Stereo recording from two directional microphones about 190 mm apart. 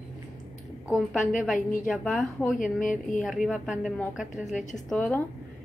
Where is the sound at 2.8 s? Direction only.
45° left (ahead or behind).